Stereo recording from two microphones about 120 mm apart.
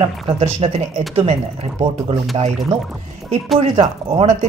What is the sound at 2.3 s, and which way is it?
Speech, 50° right (ahead or behind).